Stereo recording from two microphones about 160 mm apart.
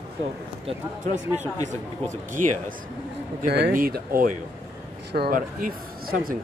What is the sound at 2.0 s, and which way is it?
Speech, 55° right (ahead or behind).